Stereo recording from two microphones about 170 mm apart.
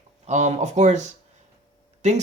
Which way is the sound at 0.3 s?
45° right (ahead or behind).